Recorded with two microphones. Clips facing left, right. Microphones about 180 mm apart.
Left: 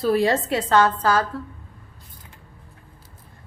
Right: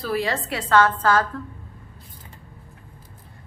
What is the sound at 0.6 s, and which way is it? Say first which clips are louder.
Speech: right 1 dB; 15° left (ahead or behind).